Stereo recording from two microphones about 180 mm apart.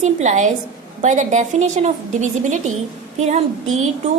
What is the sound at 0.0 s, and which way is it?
A woman's voice, 40° right (ahead or behind).